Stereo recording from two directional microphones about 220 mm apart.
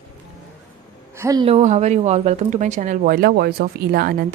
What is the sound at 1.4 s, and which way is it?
Speech, 30° right (ahead or behind).